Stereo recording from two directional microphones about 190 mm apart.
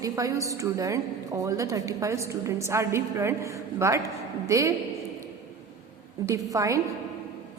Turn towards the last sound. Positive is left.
turn(degrees=-15)  # may be behind; listen again after turning